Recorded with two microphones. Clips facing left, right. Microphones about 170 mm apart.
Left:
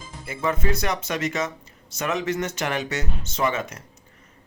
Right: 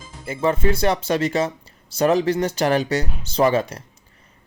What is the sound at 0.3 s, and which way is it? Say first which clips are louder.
Speech: right 5 dB; 30° right (ahead or behind).